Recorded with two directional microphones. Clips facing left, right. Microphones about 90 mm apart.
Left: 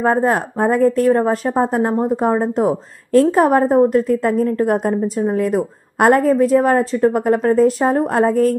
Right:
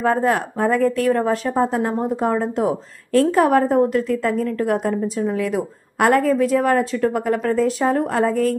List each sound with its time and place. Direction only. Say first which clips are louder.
0.0 s a woman's voice: left 2 dB; 35° left (ahead or behind)